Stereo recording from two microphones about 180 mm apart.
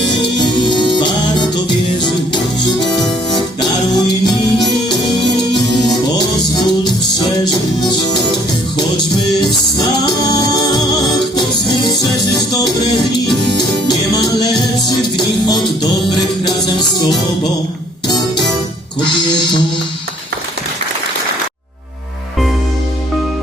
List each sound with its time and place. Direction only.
0.3 s music: 25° left (ahead or behind)
3.3 s music: 25° left (ahead or behind)
6.6 s music: 20° left (ahead or behind)
9.7 s music: 20° left (ahead or behind)